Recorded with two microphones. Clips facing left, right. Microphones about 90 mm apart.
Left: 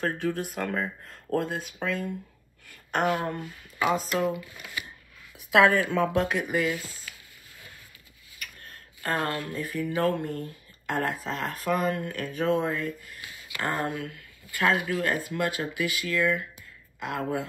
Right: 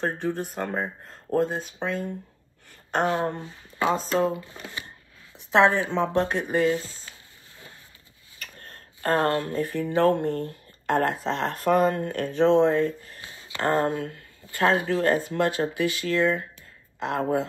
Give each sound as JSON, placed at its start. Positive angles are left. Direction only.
{"t": 0.0, "sound": "speech", "side_deg": -30}
{"t": 8.4, "sound": "speech", "side_deg": -35}